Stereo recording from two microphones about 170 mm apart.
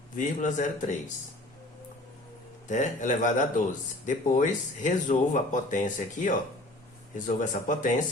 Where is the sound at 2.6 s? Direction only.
50° left (ahead or behind).